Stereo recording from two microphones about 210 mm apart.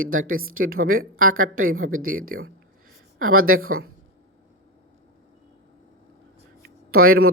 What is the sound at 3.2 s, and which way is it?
Speech, 85° right.